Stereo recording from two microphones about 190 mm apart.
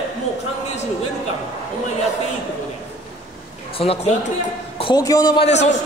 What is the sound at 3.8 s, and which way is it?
A man's voice, 30° left (ahead or behind).